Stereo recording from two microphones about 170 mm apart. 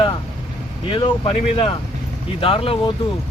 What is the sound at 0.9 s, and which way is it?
Speech, 35° left (ahead or behind).